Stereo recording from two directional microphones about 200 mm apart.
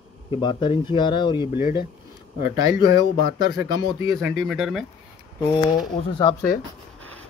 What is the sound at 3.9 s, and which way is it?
Speech, 15° right (ahead or behind).